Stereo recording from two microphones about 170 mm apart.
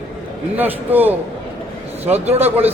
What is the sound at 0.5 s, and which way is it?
Speech, 10° right (ahead or behind).